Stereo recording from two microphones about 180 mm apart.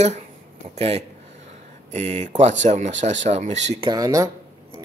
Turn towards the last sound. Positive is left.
turn(degrees=-20)  # may be behind; listen again after turning